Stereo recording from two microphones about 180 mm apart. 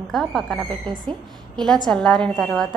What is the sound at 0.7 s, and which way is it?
Speech, 25° right (ahead or behind).